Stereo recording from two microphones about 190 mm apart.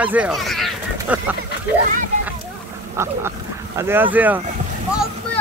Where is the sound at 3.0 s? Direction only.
15° right (ahead or behind).